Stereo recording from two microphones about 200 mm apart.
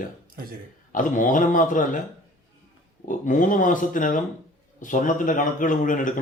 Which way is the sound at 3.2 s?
40° left (ahead or behind).